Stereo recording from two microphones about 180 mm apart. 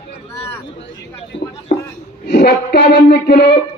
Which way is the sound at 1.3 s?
30° left (ahead or behind).